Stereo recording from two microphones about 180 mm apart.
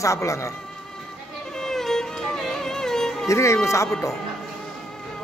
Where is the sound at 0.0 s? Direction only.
15° left (ahead or behind).